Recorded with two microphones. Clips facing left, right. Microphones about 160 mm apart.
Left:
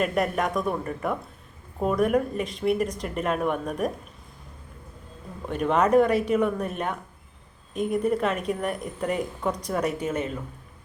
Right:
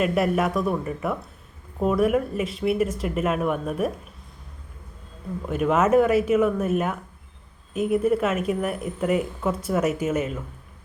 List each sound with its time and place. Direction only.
0.0 s a woman's voice: 5° right (ahead or behind)
5.5 s a woman's voice: 5° right (ahead or behind)